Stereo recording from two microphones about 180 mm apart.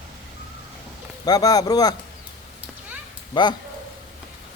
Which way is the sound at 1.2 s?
20° left (ahead or behind).